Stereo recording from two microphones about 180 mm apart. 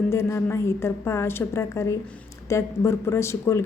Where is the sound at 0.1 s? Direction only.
15° left (ahead or behind).